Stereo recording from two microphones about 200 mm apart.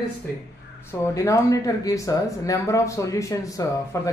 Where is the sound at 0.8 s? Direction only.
15° left (ahead or behind).